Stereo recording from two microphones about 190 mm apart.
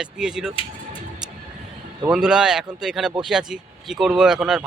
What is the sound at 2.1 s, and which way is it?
Speech, 5° right (ahead or behind).